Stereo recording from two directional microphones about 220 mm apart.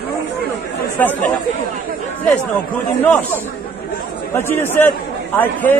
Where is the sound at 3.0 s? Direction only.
10° left (ahead or behind).